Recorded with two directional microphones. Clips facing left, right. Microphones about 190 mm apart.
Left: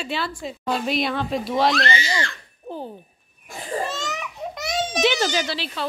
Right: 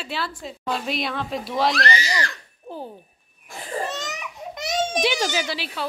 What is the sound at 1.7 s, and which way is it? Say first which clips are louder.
Speech: left 1 dB; 35° right (ahead or behind).